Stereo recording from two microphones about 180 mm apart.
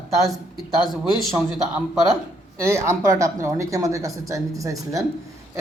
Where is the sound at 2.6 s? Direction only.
15° right (ahead or behind).